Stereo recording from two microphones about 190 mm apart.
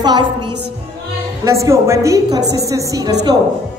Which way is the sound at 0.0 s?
25° right (ahead or behind).